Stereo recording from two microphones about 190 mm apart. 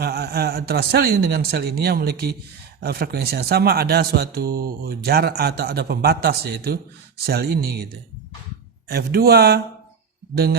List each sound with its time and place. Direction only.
0.0 s a man's voice: 55° right (ahead or behind)
8.9 s a man's voice: 55° right (ahead or behind)